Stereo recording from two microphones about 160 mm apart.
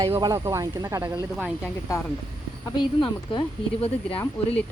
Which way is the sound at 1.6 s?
20° left (ahead or behind).